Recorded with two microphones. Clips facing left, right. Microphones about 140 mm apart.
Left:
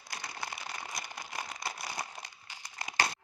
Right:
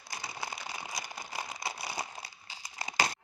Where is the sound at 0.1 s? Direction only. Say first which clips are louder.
Right 1 dB; 10° right (ahead or behind).